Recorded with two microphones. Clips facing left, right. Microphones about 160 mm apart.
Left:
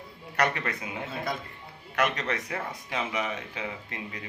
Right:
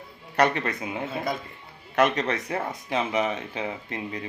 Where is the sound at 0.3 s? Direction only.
25° right (ahead or behind).